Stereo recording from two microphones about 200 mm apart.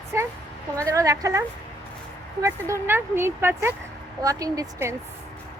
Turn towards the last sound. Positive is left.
turn(degrees=-15)  # may be behind; listen again after turning